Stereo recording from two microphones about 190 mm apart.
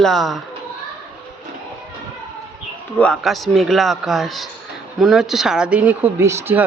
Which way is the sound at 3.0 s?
Centre (ahead or behind).